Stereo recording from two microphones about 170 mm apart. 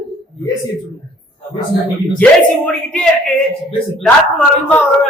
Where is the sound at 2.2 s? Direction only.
5° left (ahead or behind).